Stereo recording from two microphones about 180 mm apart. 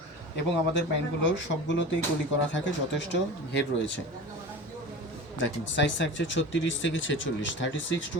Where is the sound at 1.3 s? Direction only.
90° left.